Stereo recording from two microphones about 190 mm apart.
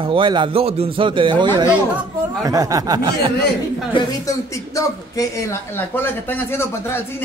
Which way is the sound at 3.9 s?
15° left (ahead or behind).